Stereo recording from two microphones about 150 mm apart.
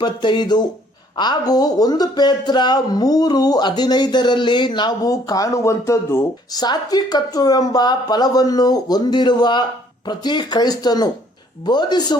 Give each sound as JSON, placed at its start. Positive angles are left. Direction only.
{"t": 0.0, "sound": "speech", "side_deg": 30}